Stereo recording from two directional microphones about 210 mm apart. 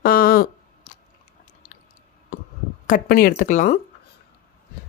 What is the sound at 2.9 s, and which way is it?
Speech, 45° left (ahead or behind).